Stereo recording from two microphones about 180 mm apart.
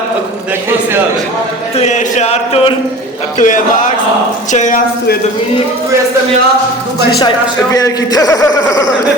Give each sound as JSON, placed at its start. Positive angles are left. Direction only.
{"t": 1.8, "sound": "chant", "side_deg": 40}
{"t": 3.3, "sound": "speech", "side_deg": 45}
{"t": 7.2, "sound": "speech", "side_deg": 20}